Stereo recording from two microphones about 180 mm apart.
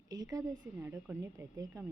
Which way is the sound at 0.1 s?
20° right (ahead or behind).